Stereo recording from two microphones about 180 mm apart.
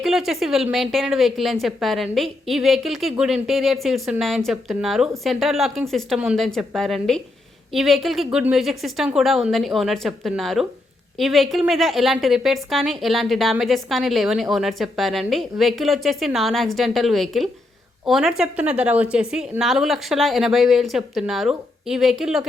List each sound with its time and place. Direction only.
0.0 s a woman's voice: centre (ahead or behind)